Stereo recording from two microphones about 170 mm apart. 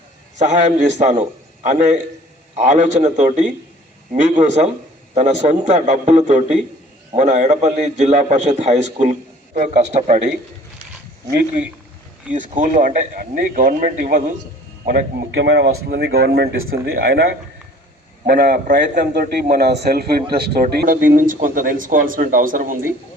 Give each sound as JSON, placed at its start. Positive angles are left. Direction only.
{"t": 0.3, "sound": "a man's voice", "side_deg": -45}
{"t": 12.3, "sound": "speech", "side_deg": -50}
{"t": 14.8, "sound": "speech", "side_deg": -75}